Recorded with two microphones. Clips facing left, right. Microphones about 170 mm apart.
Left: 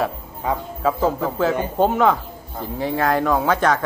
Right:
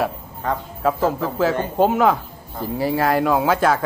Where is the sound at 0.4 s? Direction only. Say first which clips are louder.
Left 1 dB; 10° left (ahead or behind).